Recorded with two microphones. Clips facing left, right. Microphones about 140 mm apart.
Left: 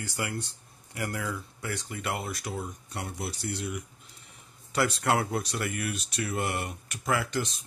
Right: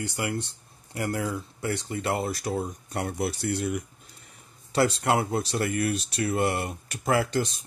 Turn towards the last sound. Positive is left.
turn(degrees=-35)  # may be behind; listen again after turning